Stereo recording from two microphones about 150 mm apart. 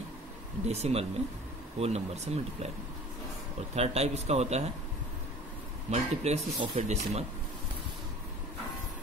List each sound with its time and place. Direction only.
0.7 s speech: 45° right (ahead or behind)
3.7 s speech: 45° right (ahead or behind)
5.9 s speech: 45° right (ahead or behind)